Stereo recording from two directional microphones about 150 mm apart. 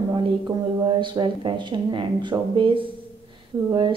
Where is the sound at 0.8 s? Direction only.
30° right (ahead or behind).